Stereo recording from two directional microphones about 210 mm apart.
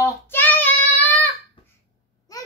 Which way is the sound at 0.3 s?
10° left (ahead or behind).